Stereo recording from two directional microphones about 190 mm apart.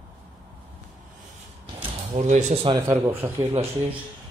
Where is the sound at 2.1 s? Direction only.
35° right (ahead or behind).